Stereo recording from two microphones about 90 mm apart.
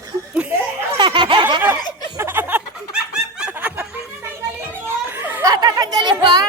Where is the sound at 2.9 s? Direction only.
10° right (ahead or behind).